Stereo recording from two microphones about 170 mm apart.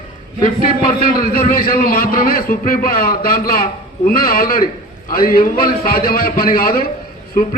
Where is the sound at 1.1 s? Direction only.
55° left (ahead or behind).